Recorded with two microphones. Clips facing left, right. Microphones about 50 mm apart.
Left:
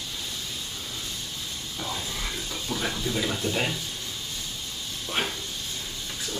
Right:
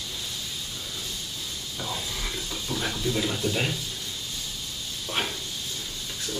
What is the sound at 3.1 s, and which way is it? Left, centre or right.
Speech, centre.